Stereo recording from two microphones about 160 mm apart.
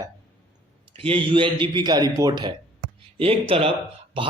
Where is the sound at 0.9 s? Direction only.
35° right (ahead or behind).